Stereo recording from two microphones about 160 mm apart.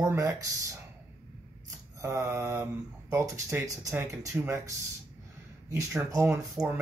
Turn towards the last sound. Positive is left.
turn(degrees=-15)  # may be behind; listen again after turning